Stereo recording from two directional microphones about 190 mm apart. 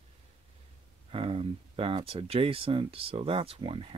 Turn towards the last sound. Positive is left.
turn(degrees=-30)  # may be behind; listen again after turning